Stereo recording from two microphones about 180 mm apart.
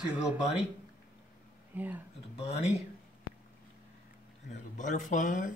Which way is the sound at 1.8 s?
10° right (ahead or behind).